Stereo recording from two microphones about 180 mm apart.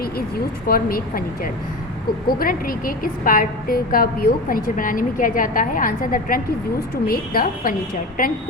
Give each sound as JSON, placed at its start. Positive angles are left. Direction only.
{"t": 0.0, "sound": "speech", "side_deg": 55}
{"t": 2.2, "sound": "a woman's voice", "side_deg": 55}